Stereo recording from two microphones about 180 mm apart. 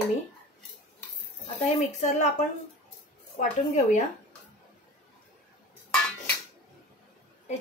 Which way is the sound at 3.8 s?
45° left (ahead or behind).